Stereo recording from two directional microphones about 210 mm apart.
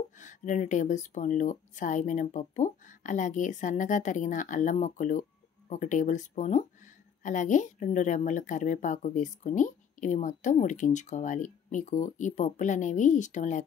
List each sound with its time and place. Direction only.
0.2 s a woman's voice: 35° left (ahead or behind)